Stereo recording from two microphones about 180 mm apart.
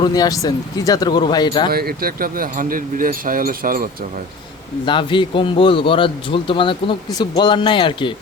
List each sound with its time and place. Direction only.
0.0 s a man's voice: 20° left (ahead or behind)
1.7 s speech: 55° right (ahead or behind)
4.9 s a man's voice: 25° left (ahead or behind)